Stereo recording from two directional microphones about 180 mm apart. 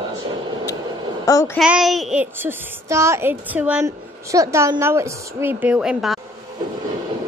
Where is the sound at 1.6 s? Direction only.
5° right (ahead or behind).